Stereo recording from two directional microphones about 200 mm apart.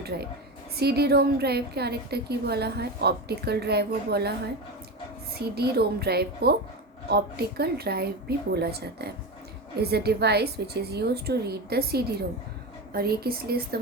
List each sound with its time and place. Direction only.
0.1 s a woman's voice: 50° right (ahead or behind)
5.4 s a woman's voice: 50° right (ahead or behind)